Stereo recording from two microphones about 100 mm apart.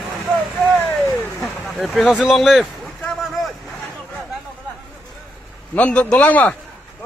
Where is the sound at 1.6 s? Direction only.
Centre (ahead or behind).